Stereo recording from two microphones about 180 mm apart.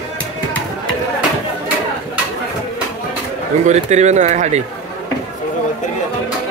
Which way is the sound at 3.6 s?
40° right (ahead or behind).